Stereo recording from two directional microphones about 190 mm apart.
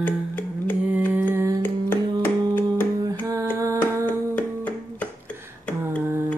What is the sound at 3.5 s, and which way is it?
Hands, 15° right (ahead or behind).